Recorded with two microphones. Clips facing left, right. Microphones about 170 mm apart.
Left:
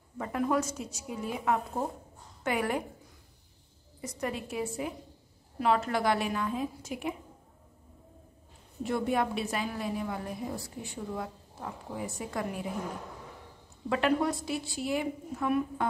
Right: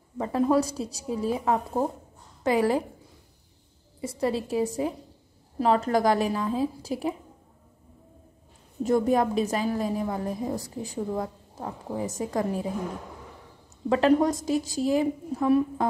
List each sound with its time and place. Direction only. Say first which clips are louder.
0.2 s a woman's voice: right 6 dB; 30° right (ahead or behind)
4.0 s a woman's voice: right 8 dB; 30° right (ahead or behind)
8.8 s a woman's voice: right 7 dB; 40° right (ahead or behind)
13.8 s a woman's voice: right 7 dB; 35° right (ahead or behind)